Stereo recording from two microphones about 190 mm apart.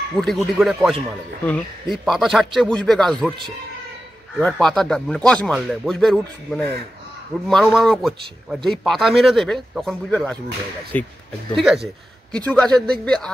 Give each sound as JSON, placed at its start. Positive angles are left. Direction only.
{"t": 0.2, "sound": "a man's voice", "side_deg": 0}
{"t": 4.4, "sound": "a man's voice", "side_deg": 5}